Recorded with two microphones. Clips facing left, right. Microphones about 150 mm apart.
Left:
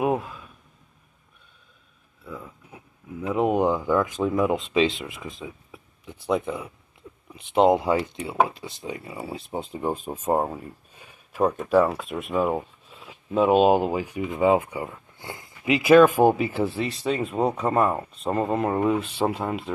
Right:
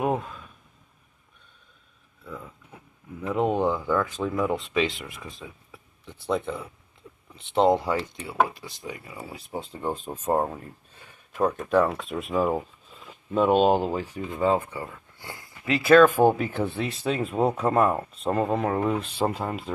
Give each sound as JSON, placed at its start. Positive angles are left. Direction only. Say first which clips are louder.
{"t": 0.0, "sound": "a sound", "louder": "left 2 dB", "side_deg": 5}
{"t": 2.2, "sound": "speech", "louder": "left 1 dB", "side_deg": 5}
{"t": 8.5, "sound": "speech", "louder": "left 3 dB", "side_deg": 30}